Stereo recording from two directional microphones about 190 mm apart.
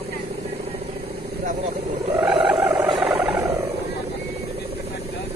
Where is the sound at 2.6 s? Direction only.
10° right (ahead or behind).